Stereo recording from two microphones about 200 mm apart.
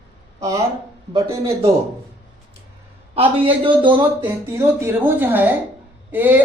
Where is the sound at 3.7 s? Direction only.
25° right (ahead or behind).